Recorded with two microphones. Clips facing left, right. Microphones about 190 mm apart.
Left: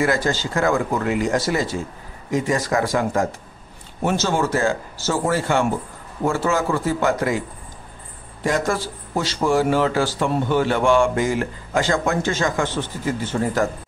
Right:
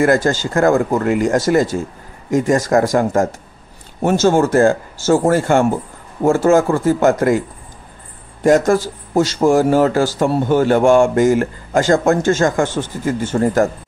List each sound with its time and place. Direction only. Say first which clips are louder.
0.0 s a man's voice: right 6 dB; 45° right (ahead or behind)
8.5 s a man's voice: right 9 dB; 45° right (ahead or behind)